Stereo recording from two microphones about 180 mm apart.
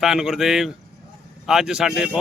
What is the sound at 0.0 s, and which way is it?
Speech, centre (ahead or behind).